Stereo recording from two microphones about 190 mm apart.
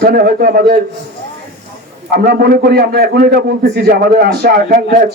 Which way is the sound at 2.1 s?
50° right (ahead or behind).